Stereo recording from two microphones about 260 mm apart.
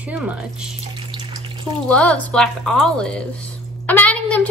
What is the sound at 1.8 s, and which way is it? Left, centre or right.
A woman's voice, centre.